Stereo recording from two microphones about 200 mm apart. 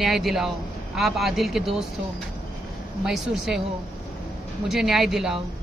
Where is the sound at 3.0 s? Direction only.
Centre (ahead or behind).